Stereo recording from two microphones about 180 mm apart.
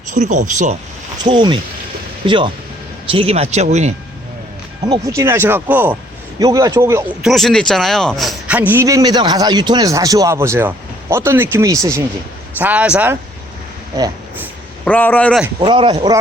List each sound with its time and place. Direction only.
0.1 s speech: 40° right (ahead or behind)
1.2 s a man's voice: 25° right (ahead or behind)
4.9 s a man's voice: 15° right (ahead or behind)
7.2 s a man's voice: centre (ahead or behind)
14.8 s speech: 10° left (ahead or behind)
15.6 s a man's voice: 25° right (ahead or behind)